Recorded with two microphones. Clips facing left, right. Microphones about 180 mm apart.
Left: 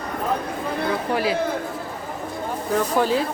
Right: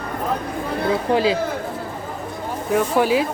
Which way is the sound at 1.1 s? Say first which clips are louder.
Right 5 dB; 25° right (ahead or behind).